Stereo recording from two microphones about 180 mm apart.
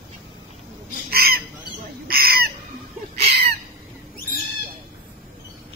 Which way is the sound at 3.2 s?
60° right (ahead or behind).